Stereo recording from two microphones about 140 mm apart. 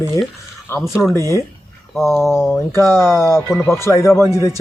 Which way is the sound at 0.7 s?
20° left (ahead or behind).